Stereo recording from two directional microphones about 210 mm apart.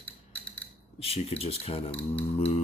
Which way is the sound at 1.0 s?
30° left (ahead or behind).